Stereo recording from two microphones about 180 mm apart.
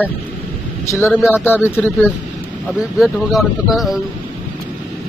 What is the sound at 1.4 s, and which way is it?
Speech, 10° left (ahead or behind).